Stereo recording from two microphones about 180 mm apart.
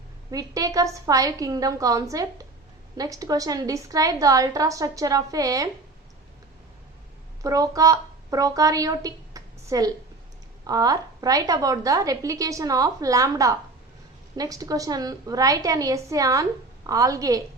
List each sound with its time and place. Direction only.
0.3 s a woman's voice: 20° right (ahead or behind)
7.4 s a woman's voice: 20° right (ahead or behind)